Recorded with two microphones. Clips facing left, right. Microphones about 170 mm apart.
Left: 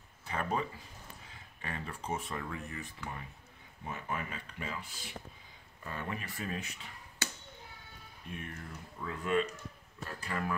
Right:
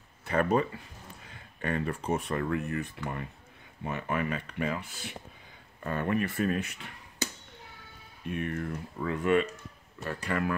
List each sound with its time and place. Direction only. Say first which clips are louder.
0.2 s speech: right 9 dB; 65° right (ahead or behind)
3.8 s speech: right 8 dB; 75° right (ahead or behind)
8.3 s speech: right 11 dB; 70° right (ahead or behind)